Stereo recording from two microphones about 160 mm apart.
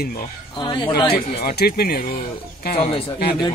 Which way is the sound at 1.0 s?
75° left (ahead or behind).